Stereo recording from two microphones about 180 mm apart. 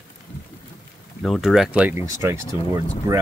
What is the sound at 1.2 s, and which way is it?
Speech, centre (ahead or behind).